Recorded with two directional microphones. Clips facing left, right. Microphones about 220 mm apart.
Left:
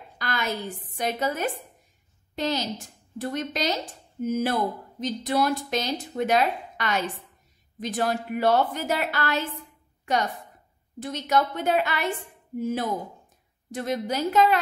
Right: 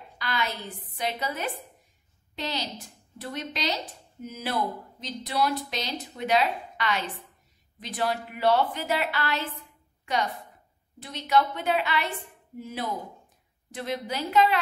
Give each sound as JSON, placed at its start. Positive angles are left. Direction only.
{"t": 0.2, "sound": "a woman's voice", "side_deg": 45}
{"t": 11.0, "sound": "speech", "side_deg": 45}